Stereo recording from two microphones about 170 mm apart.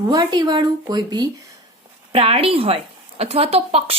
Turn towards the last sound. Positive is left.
turn(degrees=-35)  # may be behind; listen again after turning